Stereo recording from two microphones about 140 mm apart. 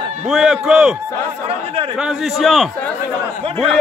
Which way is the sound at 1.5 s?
45° right (ahead or behind).